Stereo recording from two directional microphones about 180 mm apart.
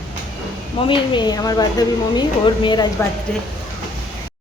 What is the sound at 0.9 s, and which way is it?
Speech, 25° left (ahead or behind).